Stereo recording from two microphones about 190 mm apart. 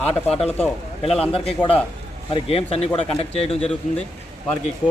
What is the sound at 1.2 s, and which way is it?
Speech, 30° left (ahead or behind).